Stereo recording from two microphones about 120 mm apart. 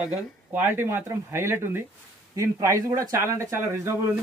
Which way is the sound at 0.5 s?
20° right (ahead or behind).